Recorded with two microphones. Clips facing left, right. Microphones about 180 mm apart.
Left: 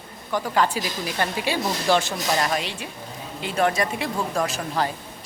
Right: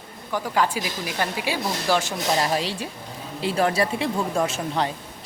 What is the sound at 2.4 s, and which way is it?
Speech, 30° right (ahead or behind).